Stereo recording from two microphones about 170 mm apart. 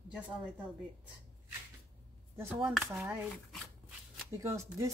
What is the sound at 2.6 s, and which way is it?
Speech, 10° right (ahead or behind).